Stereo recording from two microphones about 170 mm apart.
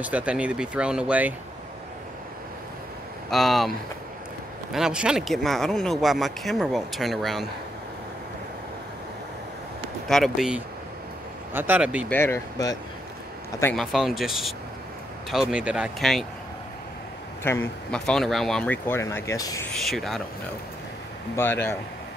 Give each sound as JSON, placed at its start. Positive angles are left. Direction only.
{"t": 0.0, "sound": "speech", "side_deg": -5}
{"t": 3.3, "sound": "speech", "side_deg": 0}
{"t": 4.7, "sound": "speech", "side_deg": -5}
{"t": 10.0, "sound": "speech", "side_deg": 0}
{"t": 12.1, "sound": "speech", "side_deg": 15}
{"t": 13.7, "sound": "speech", "side_deg": 0}
{"t": 17.4, "sound": "speech", "side_deg": 15}
{"t": 19.7, "sound": "speech", "side_deg": 0}
{"t": 21.4, "sound": "speech", "side_deg": 15}